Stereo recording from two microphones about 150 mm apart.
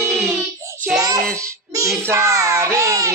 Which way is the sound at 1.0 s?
25° right (ahead or behind).